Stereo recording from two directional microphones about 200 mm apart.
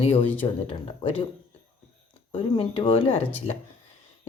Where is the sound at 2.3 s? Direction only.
30° left (ahead or behind).